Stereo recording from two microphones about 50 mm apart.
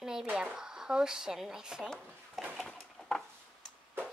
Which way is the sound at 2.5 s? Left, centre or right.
Centre.